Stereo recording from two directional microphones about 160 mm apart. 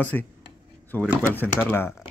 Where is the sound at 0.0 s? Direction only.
10° left (ahead or behind).